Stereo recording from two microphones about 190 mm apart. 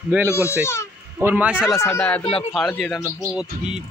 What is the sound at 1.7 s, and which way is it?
Speech, 10° left (ahead or behind).